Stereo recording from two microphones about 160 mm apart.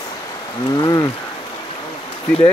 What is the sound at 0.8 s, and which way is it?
Speech, 25° left (ahead or behind).